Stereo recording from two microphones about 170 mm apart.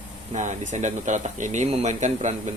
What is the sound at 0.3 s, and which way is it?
Speech, 45° right (ahead or behind).